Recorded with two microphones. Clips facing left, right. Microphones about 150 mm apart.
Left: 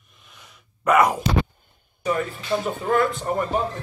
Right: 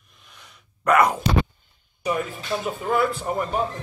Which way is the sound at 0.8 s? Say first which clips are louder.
Left 1 dB; 5° left (ahead or behind).